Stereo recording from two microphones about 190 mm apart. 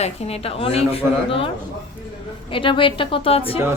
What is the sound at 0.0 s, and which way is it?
A woman's voice, 35° left (ahead or behind).